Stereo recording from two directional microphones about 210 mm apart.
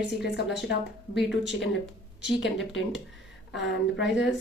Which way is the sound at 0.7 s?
55° left (ahead or behind).